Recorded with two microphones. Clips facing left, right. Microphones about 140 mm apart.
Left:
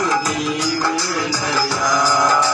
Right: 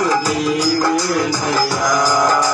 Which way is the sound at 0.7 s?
45° right (ahead or behind).